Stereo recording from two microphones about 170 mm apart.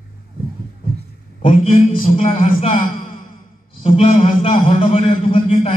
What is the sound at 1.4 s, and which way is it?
A man's voice, 40° left (ahead or behind).